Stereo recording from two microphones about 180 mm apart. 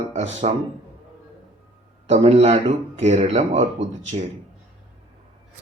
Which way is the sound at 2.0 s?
35° right (ahead or behind).